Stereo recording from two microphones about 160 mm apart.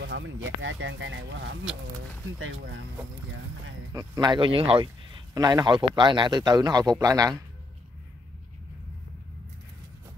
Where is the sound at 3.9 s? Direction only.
25° right (ahead or behind).